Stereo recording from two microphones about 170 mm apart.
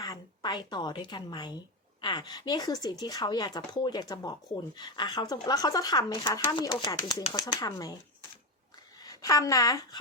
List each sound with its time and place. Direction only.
0.0 s speech: 25° left (ahead or behind)
9.0 s a woman's voice: 20° left (ahead or behind)